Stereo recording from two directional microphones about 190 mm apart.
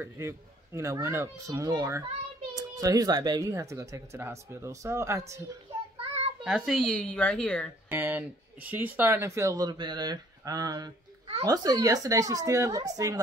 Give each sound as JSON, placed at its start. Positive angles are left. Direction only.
{"t": 0.0, "sound": "a child's voice", "side_deg": -15}
{"t": 6.4, "sound": "a woman's voice", "side_deg": -5}
{"t": 7.9, "sound": "speech", "side_deg": -10}